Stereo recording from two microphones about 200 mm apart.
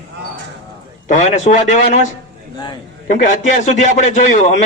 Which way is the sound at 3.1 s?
35° left (ahead or behind).